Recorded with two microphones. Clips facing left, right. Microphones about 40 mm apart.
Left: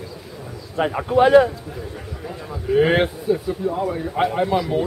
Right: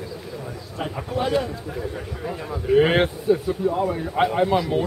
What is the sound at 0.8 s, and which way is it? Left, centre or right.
Speech, left.